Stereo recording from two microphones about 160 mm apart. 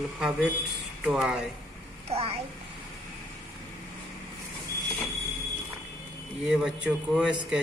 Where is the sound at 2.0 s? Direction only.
40° right (ahead or behind).